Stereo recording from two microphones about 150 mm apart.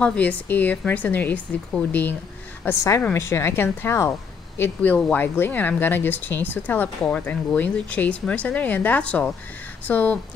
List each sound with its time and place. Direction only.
0.0 s a woman's voice: 10° left (ahead or behind)